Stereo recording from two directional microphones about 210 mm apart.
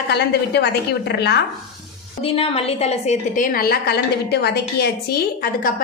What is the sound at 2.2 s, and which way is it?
A woman's voice, 25° left (ahead or behind).